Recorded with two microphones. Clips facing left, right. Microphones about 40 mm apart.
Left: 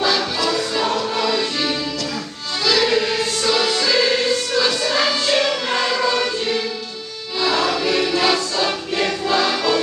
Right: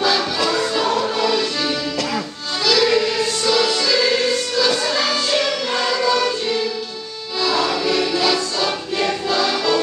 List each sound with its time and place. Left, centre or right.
0.0 s music: centre
2.6 s music: centre